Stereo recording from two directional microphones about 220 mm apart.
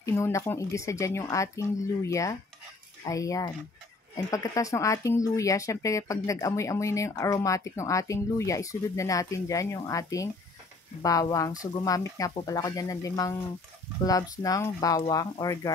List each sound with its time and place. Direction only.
0.0 s speech: 15° left (ahead or behind)